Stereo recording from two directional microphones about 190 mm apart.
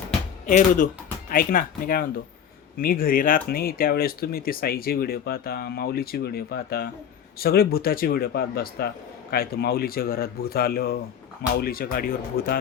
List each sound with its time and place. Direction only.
0.4 s speech: 45° left (ahead or behind)